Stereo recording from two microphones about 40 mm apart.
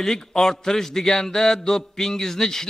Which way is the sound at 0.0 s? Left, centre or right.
Centre.